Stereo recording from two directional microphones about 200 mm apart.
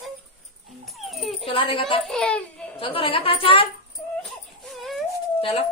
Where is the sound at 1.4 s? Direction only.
25° left (ahead or behind).